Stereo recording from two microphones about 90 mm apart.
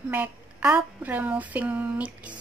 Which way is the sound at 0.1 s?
15° right (ahead or behind).